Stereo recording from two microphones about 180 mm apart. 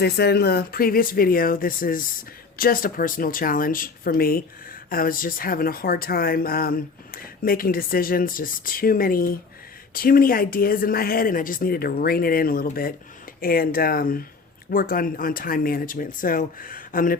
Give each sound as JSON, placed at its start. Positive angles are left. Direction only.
{"t": 0.0, "sound": "speech", "side_deg": 65}